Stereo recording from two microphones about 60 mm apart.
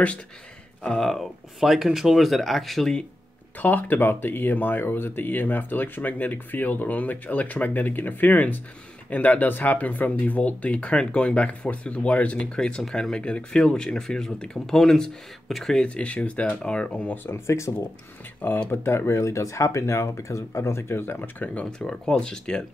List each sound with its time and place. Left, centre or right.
0.8 s speech: centre
3.5 s speech: left; by 15.8 s centre
15.8 s speech: centre
17.1 s speech: left
21.6 s speech: centre